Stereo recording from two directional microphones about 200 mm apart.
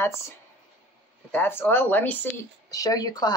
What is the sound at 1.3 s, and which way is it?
Speech, 10° left (ahead or behind).